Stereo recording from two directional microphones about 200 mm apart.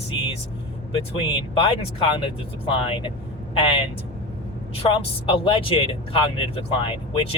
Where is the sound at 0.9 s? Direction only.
30° left (ahead or behind).